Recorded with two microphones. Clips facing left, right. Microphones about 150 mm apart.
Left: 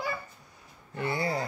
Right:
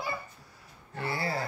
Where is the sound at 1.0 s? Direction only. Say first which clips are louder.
Left 2 dB; 20° left (ahead or behind).